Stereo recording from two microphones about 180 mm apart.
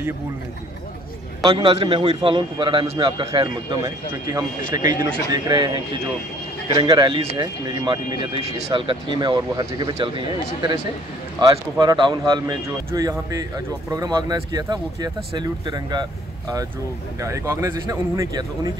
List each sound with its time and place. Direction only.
1.4 s speech: 30° right (ahead or behind)